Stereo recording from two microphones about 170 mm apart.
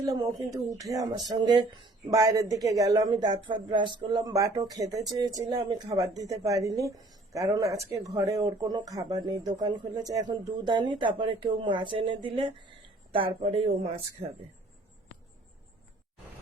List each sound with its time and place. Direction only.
0.0 s speech: 20° right (ahead or behind)